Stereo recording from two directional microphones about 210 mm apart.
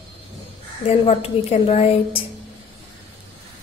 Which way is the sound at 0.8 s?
30° left (ahead or behind).